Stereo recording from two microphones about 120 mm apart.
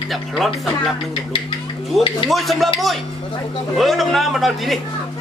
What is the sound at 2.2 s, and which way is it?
A man's voice, centre (ahead or behind).